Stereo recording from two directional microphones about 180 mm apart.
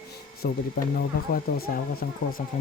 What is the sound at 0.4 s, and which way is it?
Speech, 55° left (ahead or behind).